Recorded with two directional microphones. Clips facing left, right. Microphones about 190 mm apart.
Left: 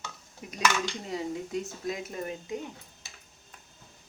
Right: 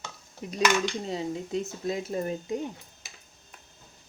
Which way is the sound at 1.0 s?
25° right (ahead or behind).